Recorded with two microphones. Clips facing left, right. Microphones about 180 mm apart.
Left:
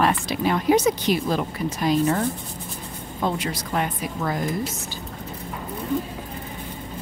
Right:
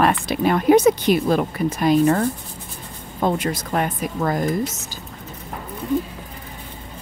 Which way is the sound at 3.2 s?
50° right (ahead or behind).